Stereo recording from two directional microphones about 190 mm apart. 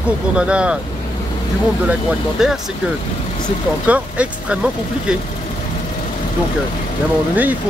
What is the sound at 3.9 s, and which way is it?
Speech, 5° right (ahead or behind).